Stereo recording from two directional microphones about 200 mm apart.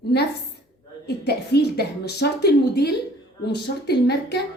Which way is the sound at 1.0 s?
55° left (ahead or behind).